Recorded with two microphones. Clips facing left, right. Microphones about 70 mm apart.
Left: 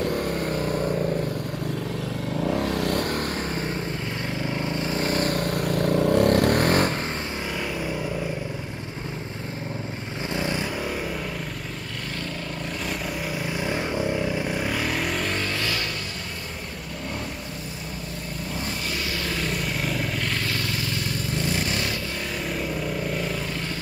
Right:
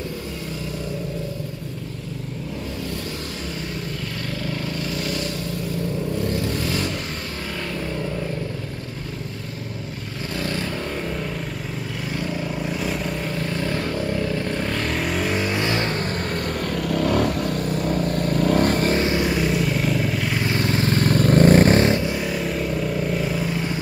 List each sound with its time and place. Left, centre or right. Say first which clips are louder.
4.6 s vehicle: left 1 dB; left
10.3 s vehicle: even; centre
13.4 s vehicle: right 2 dB; centre
15.5 s vehicle: right 5 dB; right
16.9 s vehicle: right 13 dB; right
17.8 s vehicle: right 12 dB; right
19.0 s vehicle: right 8 dB; right
19.3 s vehicle: right 6 dB; centre
20.4 s vehicle: right 7 dB; right
22.6 s vehicle: right 4 dB; centre